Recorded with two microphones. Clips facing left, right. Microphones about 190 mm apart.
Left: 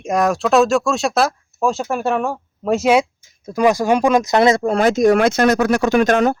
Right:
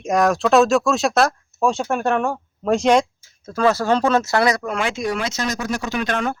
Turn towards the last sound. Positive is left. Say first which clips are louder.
# left 8 dB
turn(degrees=40)  # may be behind; listen again after turning